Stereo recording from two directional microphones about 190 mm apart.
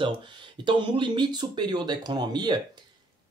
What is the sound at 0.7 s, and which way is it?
Speech, 25° right (ahead or behind).